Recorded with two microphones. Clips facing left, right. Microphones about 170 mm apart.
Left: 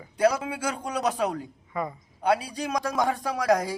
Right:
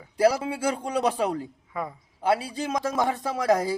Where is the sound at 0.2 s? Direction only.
30° right (ahead or behind).